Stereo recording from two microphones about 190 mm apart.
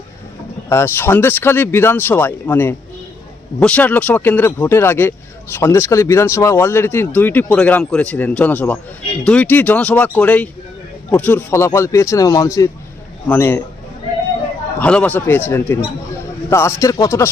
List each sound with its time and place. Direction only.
0.7 s speech: 15° left (ahead or behind)
14.8 s speech: 5° left (ahead or behind)